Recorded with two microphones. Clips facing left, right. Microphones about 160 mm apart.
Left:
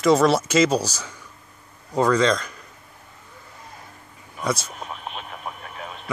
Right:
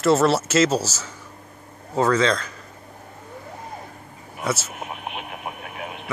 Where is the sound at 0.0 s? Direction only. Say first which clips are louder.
Left 1 dB; 5° right (ahead or behind).